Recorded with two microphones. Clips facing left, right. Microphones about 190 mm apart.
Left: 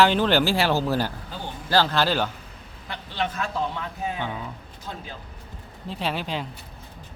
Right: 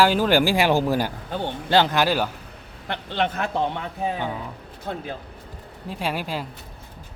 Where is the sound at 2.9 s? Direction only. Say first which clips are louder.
Right 4 dB; 60° right (ahead or behind).